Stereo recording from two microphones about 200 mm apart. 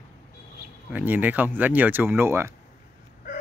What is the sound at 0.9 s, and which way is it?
Speech, 10° right (ahead or behind).